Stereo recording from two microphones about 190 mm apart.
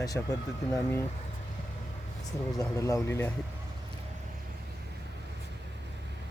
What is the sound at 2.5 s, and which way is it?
Speech, 15° left (ahead or behind).